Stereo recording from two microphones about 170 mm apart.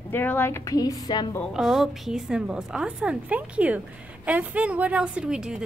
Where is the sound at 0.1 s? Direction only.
10° left (ahead or behind).